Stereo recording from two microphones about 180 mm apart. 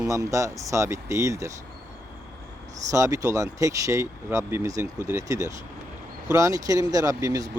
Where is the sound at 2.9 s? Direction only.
20° right (ahead or behind).